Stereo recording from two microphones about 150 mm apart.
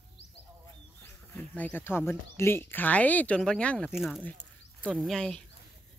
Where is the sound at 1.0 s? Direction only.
15° left (ahead or behind).